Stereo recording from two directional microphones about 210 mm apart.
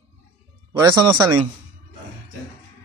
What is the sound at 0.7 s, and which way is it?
Speech, 15° right (ahead or behind).